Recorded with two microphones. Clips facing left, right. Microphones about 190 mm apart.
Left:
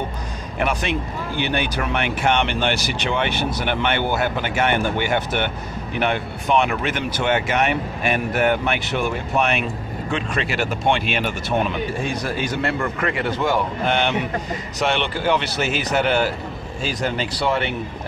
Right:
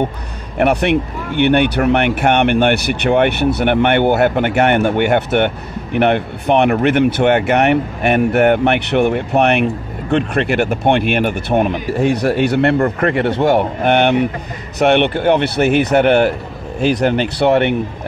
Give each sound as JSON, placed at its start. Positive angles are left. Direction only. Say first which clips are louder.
{"t": 0.6, "sound": "speech", "louder": "right 9 dB", "side_deg": -65}
{"t": 12.7, "sound": "speech", "louder": "right 9 dB", "side_deg": -40}
{"t": 13.2, "sound": "speech", "louder": "right 7 dB", "side_deg": -65}